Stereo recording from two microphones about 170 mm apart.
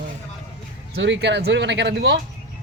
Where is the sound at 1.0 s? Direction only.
90° right.